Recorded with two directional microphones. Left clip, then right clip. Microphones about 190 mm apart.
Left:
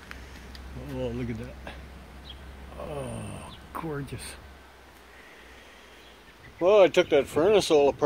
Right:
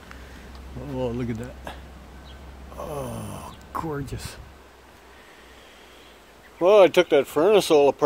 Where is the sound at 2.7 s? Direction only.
15° right (ahead or behind).